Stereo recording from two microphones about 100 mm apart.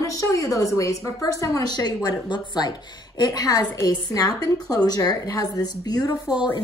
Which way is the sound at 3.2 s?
40° left (ahead or behind).